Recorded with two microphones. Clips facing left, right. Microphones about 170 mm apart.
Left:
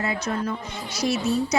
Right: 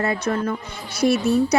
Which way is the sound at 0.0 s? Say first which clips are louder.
Right 4 dB; 55° right (ahead or behind).